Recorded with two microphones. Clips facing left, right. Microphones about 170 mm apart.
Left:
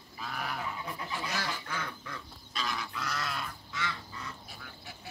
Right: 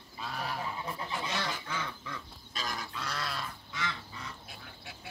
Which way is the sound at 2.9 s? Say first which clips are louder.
Left 1 dB; 30° right (ahead or behind).